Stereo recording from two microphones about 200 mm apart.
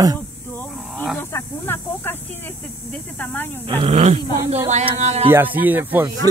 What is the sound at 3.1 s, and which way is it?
Speech, 10° left (ahead or behind).